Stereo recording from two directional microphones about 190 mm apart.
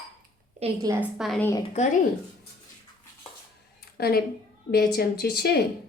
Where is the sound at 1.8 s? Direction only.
35° left (ahead or behind).